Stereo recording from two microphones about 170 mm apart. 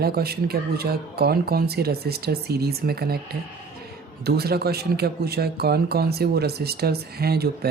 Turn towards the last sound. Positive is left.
turn(degrees=-65)  # may be behind; listen again after turning